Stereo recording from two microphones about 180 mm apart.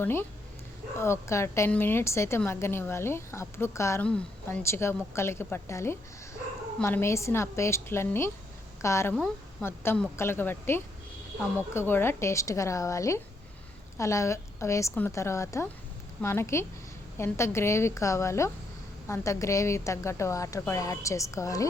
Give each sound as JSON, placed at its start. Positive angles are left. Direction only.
{"t": 0.0, "sound": "a woman's voice", "side_deg": 10}
{"t": 9.1, "sound": "a woman's voice", "side_deg": 5}